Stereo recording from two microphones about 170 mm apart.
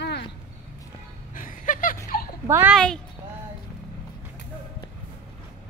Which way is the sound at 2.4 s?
15° right (ahead or behind).